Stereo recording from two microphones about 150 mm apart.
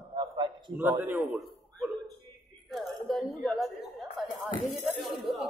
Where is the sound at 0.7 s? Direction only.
15° right (ahead or behind).